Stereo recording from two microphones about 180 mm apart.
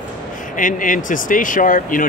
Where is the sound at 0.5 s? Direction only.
45° left (ahead or behind).